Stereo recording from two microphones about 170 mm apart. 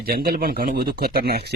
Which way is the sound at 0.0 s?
60° right (ahead or behind).